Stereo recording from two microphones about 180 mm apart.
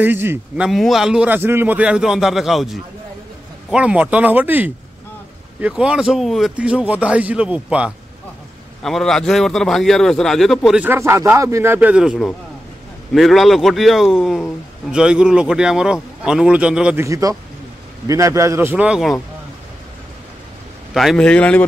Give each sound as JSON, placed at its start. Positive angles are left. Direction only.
{"t": 0.0, "sound": "a man's voice", "side_deg": -10}
{"t": 0.7, "sound": "a man's voice", "side_deg": 0}
{"t": 17.0, "sound": "a man's voice", "side_deg": -20}
{"t": 20.9, "sound": "a man's voice", "side_deg": 0}